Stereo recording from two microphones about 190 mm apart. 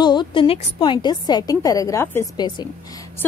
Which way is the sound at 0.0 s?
25° left (ahead or behind).